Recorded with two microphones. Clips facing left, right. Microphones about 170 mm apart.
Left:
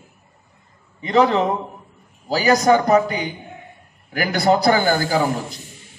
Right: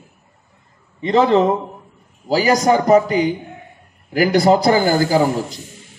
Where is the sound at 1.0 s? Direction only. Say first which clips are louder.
Right 1 dB; 25° right (ahead or behind).